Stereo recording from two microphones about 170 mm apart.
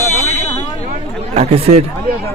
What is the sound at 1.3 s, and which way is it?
Speech, 35° right (ahead or behind).